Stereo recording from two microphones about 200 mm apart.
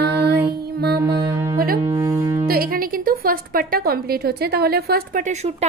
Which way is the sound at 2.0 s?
15° right (ahead or behind).